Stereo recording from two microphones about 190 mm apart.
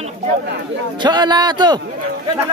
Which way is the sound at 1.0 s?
20° right (ahead or behind).